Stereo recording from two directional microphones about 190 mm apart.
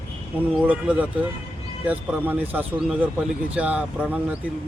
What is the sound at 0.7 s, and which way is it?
Speech, 5° right (ahead or behind).